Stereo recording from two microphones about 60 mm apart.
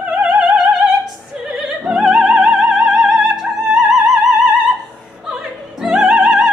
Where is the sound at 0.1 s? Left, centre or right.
Right.